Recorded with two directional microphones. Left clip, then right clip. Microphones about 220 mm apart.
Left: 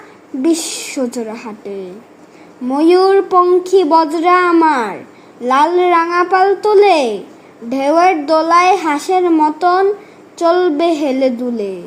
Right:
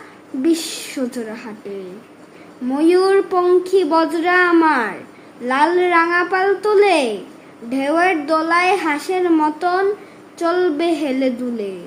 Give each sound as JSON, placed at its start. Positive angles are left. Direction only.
{"t": 0.4, "sound": "a child's voice", "side_deg": 20}